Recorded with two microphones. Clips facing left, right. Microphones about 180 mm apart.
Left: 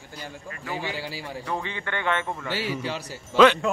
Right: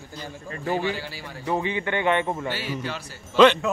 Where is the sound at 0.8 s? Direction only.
15° left (ahead or behind).